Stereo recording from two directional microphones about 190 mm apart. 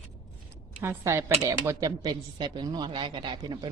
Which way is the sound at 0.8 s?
15° right (ahead or behind).